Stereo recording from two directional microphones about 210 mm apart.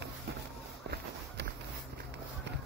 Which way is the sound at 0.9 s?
55° right (ahead or behind).